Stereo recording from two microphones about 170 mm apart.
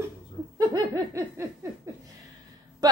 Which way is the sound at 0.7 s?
20° right (ahead or behind).